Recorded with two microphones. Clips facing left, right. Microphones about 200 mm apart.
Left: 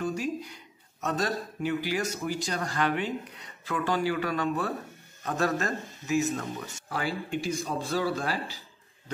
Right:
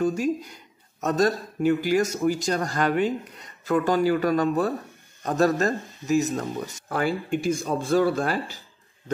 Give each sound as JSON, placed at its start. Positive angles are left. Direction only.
{"t": 0.0, "sound": "a man's voice", "side_deg": -45}